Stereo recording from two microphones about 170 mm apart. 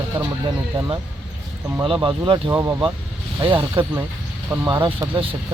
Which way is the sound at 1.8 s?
30° right (ahead or behind).